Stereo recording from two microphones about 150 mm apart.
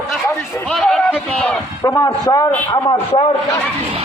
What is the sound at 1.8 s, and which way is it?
Speech, 20° left (ahead or behind).